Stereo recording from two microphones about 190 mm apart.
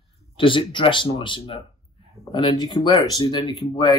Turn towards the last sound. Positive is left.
turn(degrees=25)  # may be behind; listen again after turning